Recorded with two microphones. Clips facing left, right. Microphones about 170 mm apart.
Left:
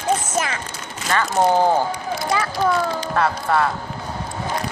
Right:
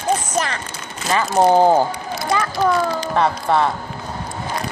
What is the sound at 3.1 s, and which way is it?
Speech, 20° right (ahead or behind).